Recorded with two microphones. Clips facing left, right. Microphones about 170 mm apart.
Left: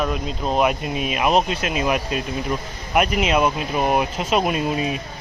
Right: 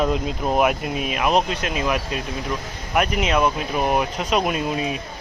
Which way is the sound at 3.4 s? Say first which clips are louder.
Left 1 dB; 10° left (ahead or behind).